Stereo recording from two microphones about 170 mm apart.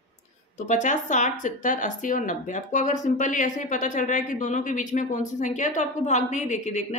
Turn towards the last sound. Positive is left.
turn(degrees=40)  # may be behind; listen again after turning